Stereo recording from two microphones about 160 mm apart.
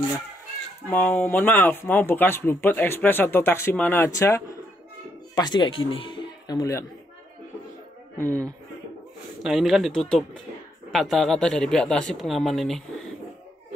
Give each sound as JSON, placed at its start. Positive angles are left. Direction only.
{"t": 0.8, "sound": "speech", "side_deg": 10}
{"t": 8.2, "sound": "speech", "side_deg": 10}
{"t": 9.4, "sound": "speech", "side_deg": 0}